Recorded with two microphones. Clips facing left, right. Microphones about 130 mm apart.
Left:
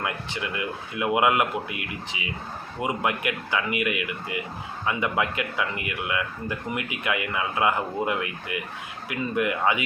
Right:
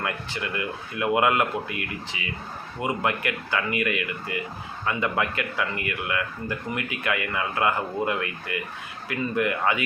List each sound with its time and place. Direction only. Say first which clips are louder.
0.0 s a man's voice: even; 20° left (ahead or behind)